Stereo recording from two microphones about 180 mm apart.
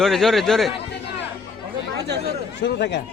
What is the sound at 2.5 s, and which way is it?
Speech, 80° left.